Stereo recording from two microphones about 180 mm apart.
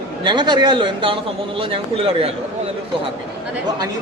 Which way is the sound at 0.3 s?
25° right (ahead or behind).